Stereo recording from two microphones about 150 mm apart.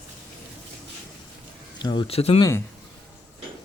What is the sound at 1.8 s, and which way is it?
Speech, 30° left (ahead or behind).